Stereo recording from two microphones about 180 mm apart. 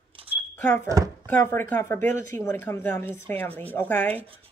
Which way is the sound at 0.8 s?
20° right (ahead or behind).